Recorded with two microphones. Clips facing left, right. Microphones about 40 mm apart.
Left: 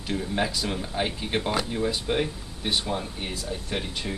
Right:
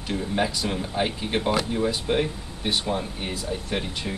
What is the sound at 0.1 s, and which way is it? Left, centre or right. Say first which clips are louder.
Speech: right 2 dB; centre.